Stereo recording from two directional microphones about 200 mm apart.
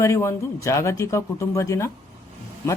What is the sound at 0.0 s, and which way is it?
Speech, 15° left (ahead or behind).